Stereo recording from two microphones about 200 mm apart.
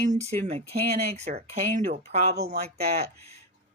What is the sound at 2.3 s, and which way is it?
Speech, 55° right (ahead or behind).